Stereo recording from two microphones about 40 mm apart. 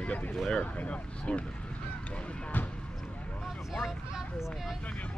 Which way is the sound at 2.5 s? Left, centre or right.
Left.